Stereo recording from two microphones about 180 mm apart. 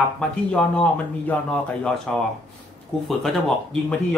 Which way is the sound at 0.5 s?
5° left (ahead or behind).